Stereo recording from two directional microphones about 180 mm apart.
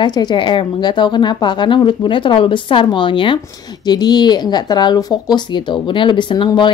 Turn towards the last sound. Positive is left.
turn(degrees=25)  # may be behind; listen again after turning